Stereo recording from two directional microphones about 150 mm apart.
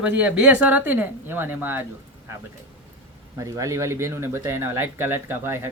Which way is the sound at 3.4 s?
20° right (ahead or behind).